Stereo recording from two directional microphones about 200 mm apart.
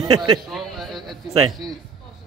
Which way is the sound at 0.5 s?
Centre (ahead or behind).